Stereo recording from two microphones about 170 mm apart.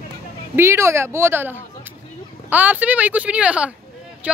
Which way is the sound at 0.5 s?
15° right (ahead or behind).